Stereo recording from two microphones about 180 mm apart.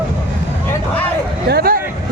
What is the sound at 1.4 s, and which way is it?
Hubbub, 60° right (ahead or behind).